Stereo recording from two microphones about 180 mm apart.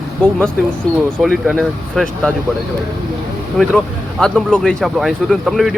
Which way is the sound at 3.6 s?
Centre (ahead or behind).